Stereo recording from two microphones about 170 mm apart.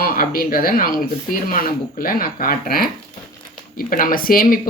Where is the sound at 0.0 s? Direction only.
55° left (ahead or behind).